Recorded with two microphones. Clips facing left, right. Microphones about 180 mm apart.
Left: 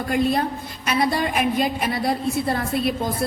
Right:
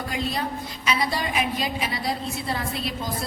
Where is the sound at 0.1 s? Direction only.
55° left (ahead or behind).